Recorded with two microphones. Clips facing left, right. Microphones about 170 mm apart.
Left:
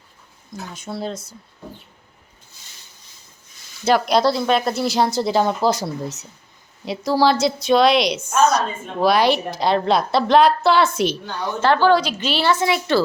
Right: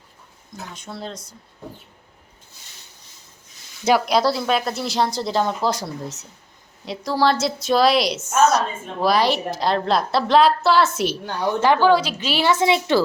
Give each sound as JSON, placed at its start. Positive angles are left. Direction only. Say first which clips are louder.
{"t": 0.7, "sound": "a woman's voice", "louder": "left 6 dB", "side_deg": 5}
{"t": 3.8, "sound": "a woman's voice", "louder": "left 1 dB", "side_deg": -5}
{"t": 12.5, "sound": "a woman's voice", "louder": "right 1 dB", "side_deg": -25}